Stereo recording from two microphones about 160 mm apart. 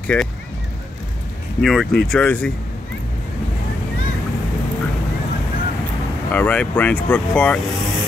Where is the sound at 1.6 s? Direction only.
Centre (ahead or behind).